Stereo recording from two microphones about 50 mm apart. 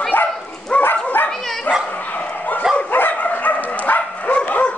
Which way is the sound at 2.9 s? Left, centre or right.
Left.